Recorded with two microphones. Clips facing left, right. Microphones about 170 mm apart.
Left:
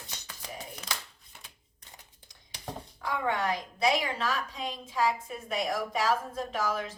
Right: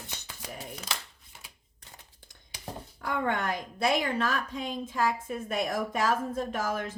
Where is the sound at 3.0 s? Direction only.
55° right (ahead or behind).